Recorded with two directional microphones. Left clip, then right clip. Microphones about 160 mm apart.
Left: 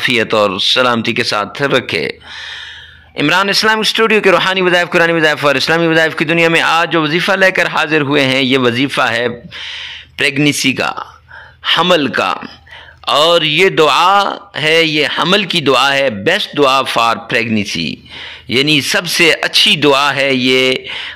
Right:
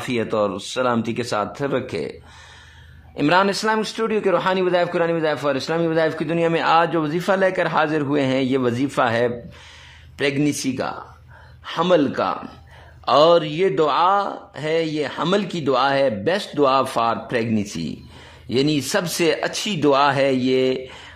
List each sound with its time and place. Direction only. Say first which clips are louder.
0.0 s speech: left 10 dB; 15° left (ahead or behind)
3.2 s speech: left 6 dB; 10° left (ahead or behind)